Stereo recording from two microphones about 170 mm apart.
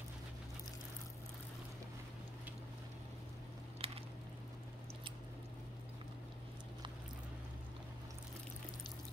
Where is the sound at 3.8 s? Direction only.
35° right (ahead or behind).